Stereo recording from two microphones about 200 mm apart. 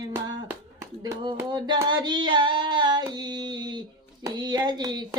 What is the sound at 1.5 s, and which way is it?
Female singing, 20° right (ahead or behind).